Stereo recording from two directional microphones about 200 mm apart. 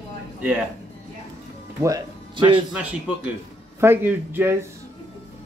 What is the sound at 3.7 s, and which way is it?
Speech, 10° right (ahead or behind).